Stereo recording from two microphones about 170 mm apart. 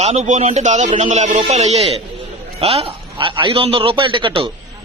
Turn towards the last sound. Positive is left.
turn(degrees=-30)  # may be behind; listen again after turning